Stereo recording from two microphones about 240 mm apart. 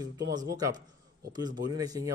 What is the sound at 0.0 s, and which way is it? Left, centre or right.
A man's voice, centre.